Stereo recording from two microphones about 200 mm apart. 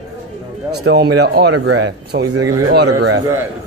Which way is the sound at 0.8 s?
55° right (ahead or behind).